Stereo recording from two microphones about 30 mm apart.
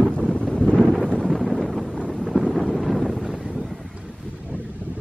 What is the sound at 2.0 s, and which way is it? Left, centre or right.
Wind noise, centre.